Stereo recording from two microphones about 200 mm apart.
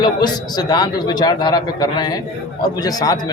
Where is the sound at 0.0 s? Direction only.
20° left (ahead or behind).